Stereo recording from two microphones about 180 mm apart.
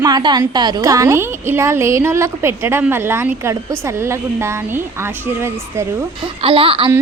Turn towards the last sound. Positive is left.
turn(degrees=-30)  # may be behind; listen again after turning